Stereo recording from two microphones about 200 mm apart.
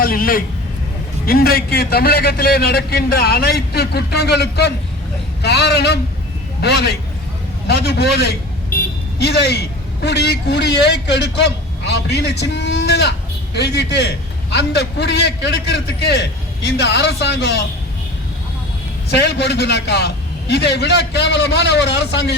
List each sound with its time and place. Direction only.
0.0 s a man's voice: 45° left (ahead or behind)
19.1 s a man's voice: 55° left (ahead or behind)